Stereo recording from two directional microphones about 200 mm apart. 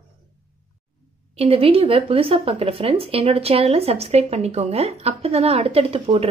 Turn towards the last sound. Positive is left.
turn(degrees=-30)  # may be behind; listen again after turning